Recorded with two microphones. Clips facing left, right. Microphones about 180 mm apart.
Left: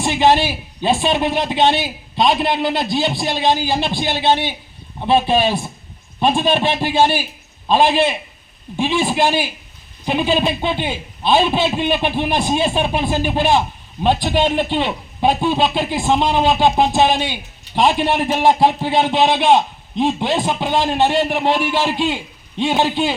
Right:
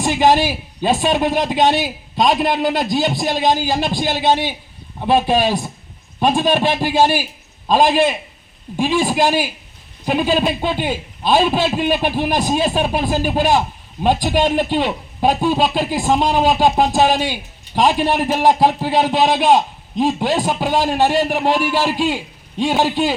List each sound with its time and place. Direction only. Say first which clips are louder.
0.2 s a man's voice: even; 10° right (ahead or behind)
3.8 s a man's voice: right 1 dB; 40° right (ahead or behind)
4.0 s a man's voice: right 1 dB; 10° right (ahead or behind)